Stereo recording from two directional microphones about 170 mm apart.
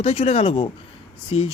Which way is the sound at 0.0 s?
40° left (ahead or behind).